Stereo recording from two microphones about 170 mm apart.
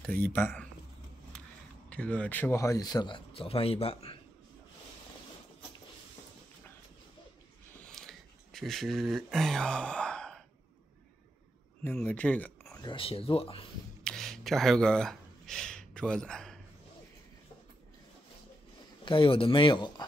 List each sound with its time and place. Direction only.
0.0 s speech: 10° left (ahead or behind)
1.9 s speech: 5° left (ahead or behind); by 4.2 s 35° left (ahead or behind)
7.9 s a sound: centre (ahead or behind)
11.8 s speech: 10° left (ahead or behind)
12.8 s speech: 30° left (ahead or behind)
14.0 s a sound: 5° left (ahead or behind)
19.0 s speech: 30° left (ahead or behind)